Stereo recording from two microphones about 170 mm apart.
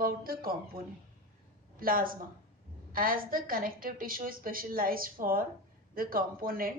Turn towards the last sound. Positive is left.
turn(degrees=-55)  # may be behind; listen again after turning